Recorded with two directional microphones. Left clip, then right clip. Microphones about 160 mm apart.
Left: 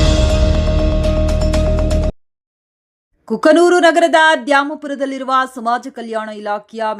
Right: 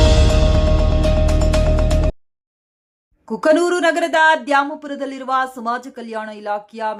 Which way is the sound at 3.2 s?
25° left (ahead or behind).